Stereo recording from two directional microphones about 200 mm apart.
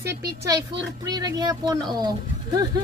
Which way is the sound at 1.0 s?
20° right (ahead or behind).